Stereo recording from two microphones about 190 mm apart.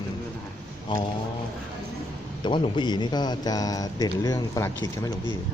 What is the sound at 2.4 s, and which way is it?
A man's voice, 25° left (ahead or behind).